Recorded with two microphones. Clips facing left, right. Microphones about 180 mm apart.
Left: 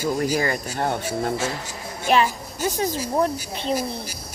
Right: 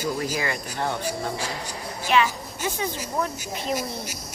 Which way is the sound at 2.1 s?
40° left (ahead or behind).